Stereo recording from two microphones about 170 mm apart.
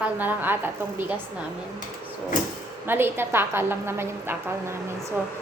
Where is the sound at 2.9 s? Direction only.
15° right (ahead or behind).